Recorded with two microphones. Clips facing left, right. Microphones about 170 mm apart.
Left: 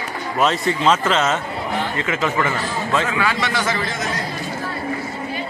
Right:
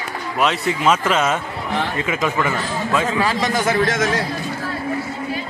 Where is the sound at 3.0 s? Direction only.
35° right (ahead or behind).